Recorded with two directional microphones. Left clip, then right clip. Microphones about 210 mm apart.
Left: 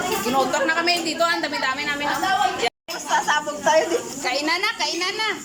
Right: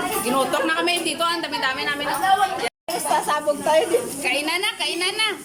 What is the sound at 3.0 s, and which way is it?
A woman's voice, 20° right (ahead or behind).